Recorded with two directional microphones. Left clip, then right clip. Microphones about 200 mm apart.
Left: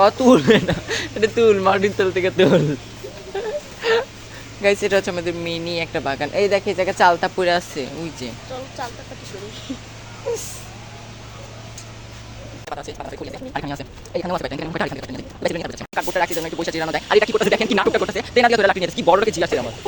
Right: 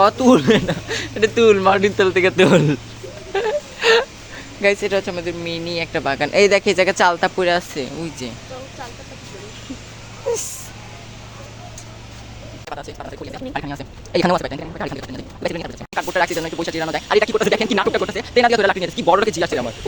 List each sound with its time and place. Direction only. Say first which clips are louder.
0.0 s speech: even; 5° right (ahead or behind)
1.4 s speech: right 2 dB; 10° right (ahead or behind); by 2.7 s 30° right (ahead or behind)
3.3 s wail: right 6 dB; 25° right (ahead or behind)
4.8 s speech: left 1 dB; 10° left (ahead or behind); by 6.3 s 15° right (ahead or behind)
6.3 s speech: right 5 dB; 30° right (ahead or behind)
7.0 s speech: even; 15° right (ahead or behind)
10.3 s vehicle: right 3 dB; 10° right (ahead or behind)
12.6 s speech: left 1 dB; centre (ahead or behind)
14.1 s speech: right 8 dB; 35° right (ahead or behind)
14.3 s speech: right 1 dB; centre (ahead or behind)
16.1 s speech: right 3 dB; 15° right (ahead or behind)
16.6 s speech: left 1 dB; centre (ahead or behind)